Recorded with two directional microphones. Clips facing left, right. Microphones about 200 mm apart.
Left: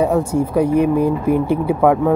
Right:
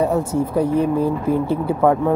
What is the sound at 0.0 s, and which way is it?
Speech, 15° left (ahead or behind).